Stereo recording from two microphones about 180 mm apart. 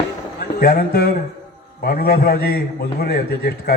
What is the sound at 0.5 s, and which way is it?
A man's voice, 60° left (ahead or behind).